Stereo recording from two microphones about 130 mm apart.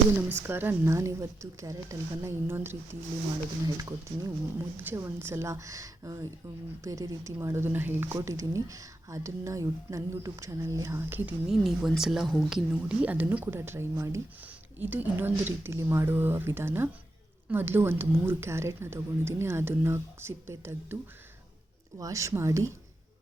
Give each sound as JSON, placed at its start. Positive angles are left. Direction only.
{"t": 0.4, "sound": "speech", "side_deg": -15}
{"t": 11.4, "sound": "speech", "side_deg": -5}